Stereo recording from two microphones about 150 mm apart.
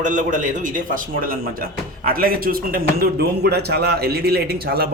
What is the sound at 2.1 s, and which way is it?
A man's voice, 80° right.